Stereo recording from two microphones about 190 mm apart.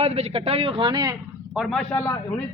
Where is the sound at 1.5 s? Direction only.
Centre (ahead or behind).